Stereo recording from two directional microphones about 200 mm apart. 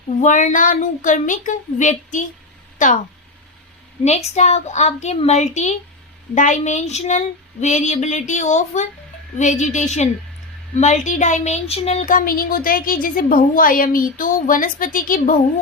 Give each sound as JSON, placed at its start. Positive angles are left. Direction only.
{"t": 0.2, "sound": "speech", "side_deg": 40}
{"t": 4.4, "sound": "speech", "side_deg": 35}